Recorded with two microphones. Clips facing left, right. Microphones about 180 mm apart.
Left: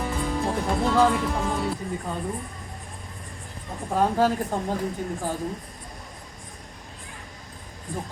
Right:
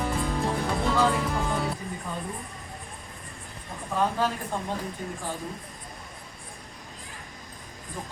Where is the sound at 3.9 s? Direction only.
40° left (ahead or behind).